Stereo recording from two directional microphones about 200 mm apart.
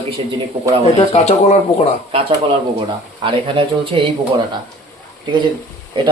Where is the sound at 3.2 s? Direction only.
25° right (ahead or behind).